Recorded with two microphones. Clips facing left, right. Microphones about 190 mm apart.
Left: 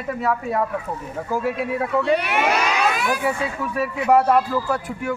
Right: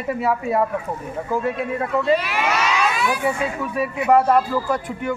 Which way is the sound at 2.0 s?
65° left (ahead or behind).